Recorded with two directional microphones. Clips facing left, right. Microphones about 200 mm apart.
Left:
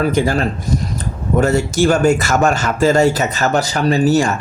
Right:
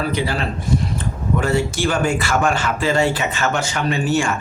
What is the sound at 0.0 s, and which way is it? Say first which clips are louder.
Speech: left 6 dB; 45° left (ahead or behind).